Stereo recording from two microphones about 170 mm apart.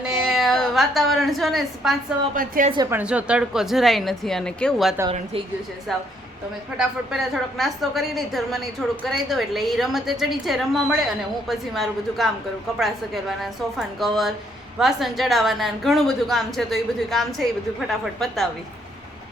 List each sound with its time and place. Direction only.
0.1 s a woman's voice: centre (ahead or behind)
2.3 s a woman's voice: 55° right (ahead or behind)
2.9 s a woman's voice: 5° right (ahead or behind)